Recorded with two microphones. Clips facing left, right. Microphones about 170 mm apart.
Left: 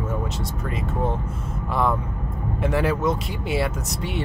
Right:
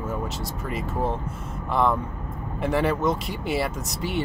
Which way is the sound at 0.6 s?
Centre (ahead or behind).